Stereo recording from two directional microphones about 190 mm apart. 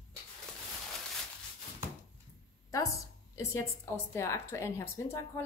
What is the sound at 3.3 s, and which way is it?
A woman's voice, 15° left (ahead or behind).